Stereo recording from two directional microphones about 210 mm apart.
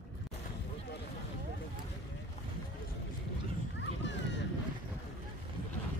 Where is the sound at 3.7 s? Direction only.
60° left (ahead or behind).